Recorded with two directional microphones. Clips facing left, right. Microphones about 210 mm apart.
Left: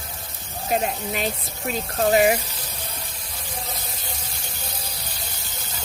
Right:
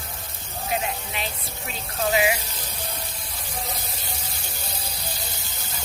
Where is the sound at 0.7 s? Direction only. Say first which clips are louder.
Left 5 dB; 45° left (ahead or behind).